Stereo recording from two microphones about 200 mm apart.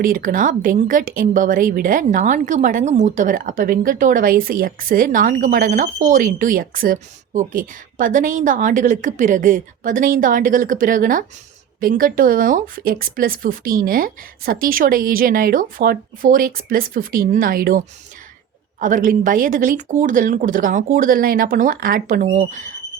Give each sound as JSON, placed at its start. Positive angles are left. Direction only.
{"t": 0.0, "sound": "speech", "side_deg": -45}